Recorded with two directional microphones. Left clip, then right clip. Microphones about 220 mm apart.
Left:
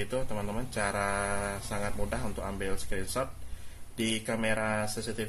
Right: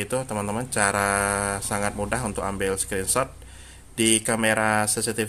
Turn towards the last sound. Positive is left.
turn(degrees=-35)  # may be behind; listen again after turning